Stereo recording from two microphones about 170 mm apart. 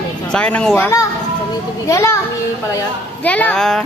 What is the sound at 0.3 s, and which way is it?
A man's voice, 5° left (ahead or behind).